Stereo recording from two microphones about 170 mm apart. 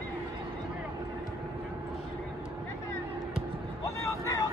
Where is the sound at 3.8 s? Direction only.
20° left (ahead or behind).